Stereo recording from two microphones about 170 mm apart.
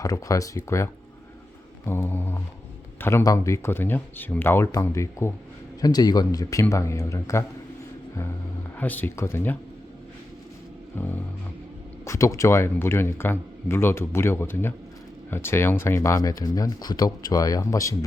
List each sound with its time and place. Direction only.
0.0 s speech: 20° left (ahead or behind)
1.9 s speech: 10° left (ahead or behind)
8.8 s speech: 10° left (ahead or behind)
10.9 s speech: 10° left (ahead or behind)